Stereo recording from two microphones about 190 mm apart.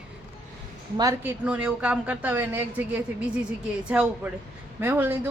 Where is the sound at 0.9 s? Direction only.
20° right (ahead or behind).